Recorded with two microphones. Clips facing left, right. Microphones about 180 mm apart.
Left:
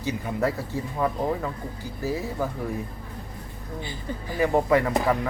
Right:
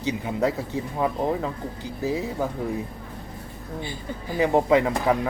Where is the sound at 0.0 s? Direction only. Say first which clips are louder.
Right 2 dB; 20° right (ahead or behind).